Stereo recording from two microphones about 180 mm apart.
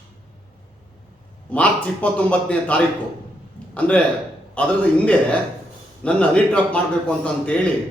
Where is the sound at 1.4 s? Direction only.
5° left (ahead or behind).